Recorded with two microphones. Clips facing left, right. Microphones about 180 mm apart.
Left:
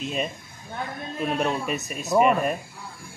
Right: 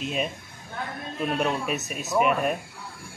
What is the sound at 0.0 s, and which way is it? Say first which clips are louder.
Speech: even; 5° right (ahead or behind).